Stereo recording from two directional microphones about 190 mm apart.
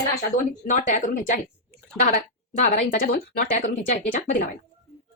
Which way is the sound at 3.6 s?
40° left (ahead or behind).